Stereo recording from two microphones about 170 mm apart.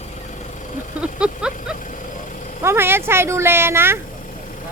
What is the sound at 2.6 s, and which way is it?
Speech, 15° right (ahead or behind).